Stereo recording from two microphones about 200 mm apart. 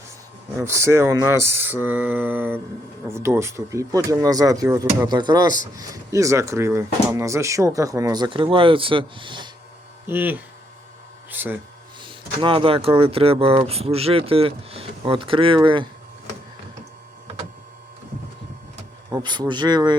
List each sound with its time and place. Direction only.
0.6 s speech: 15° right (ahead or behind)
10.1 s speech: 10° right (ahead or behind)
12.0 s speech: 25° right (ahead or behind)
19.1 s speech: 20° right (ahead or behind)